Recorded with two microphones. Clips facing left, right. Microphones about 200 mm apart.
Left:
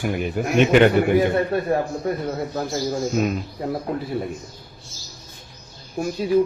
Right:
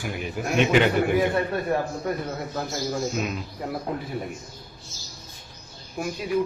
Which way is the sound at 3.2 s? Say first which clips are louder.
Left 7 dB; 45° left (ahead or behind).